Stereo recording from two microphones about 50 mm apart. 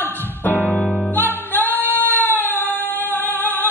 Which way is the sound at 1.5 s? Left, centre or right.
Left.